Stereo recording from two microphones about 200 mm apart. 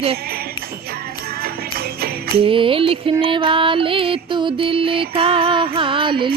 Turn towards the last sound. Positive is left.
turn(degrees=-25)  # may be behind; listen again after turning